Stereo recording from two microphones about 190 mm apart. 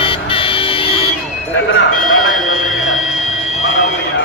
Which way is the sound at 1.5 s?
80° left.